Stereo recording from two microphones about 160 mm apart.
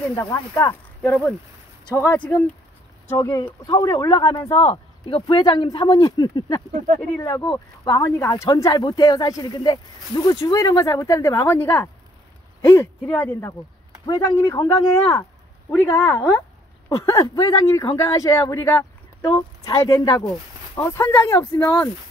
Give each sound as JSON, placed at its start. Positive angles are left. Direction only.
{"t": 0.3, "sound": "speech", "side_deg": 20}
{"t": 2.1, "sound": "speech", "side_deg": 10}
{"t": 4.6, "sound": "speech", "side_deg": 35}